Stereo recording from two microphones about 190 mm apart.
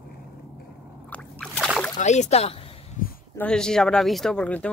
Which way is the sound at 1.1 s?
5° left (ahead or behind).